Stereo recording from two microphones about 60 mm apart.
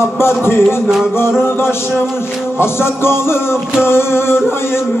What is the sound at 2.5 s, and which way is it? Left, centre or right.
Music, left.